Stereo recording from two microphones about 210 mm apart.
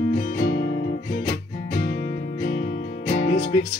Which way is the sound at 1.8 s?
50° left (ahead or behind).